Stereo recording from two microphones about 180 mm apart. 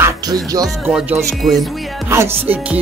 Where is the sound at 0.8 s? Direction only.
10° right (ahead or behind).